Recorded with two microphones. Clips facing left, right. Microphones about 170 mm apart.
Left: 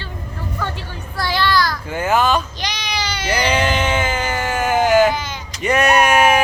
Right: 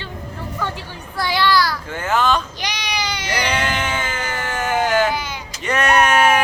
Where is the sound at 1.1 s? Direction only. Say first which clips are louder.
Right 1 dB; 15° right (ahead or behind).